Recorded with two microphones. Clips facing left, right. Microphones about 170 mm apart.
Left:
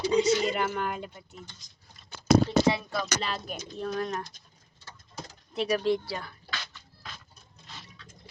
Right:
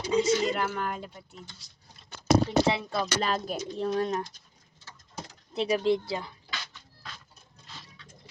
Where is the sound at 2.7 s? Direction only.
25° right (ahead or behind).